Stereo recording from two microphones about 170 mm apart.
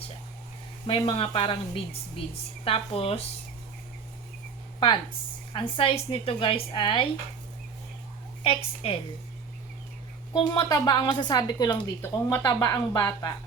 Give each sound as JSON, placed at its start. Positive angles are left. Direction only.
{"t": 0.9, "sound": "a woman's voice", "side_deg": 30}
{"t": 5.5, "sound": "a woman's voice", "side_deg": 30}
{"t": 8.4, "sound": "a woman's voice", "side_deg": 35}
{"t": 10.3, "sound": "a woman's voice", "side_deg": 25}